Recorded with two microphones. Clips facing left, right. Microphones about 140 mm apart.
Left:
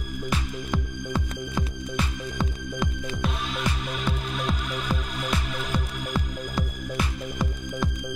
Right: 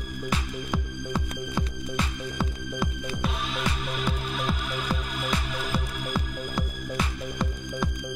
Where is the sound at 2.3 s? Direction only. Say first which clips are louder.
Left 1 dB; 5° right (ahead or behind).